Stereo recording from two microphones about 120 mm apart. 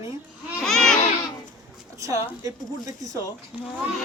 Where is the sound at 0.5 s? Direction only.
5° left (ahead or behind).